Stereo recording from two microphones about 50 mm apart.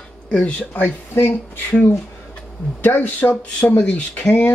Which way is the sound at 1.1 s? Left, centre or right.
Left.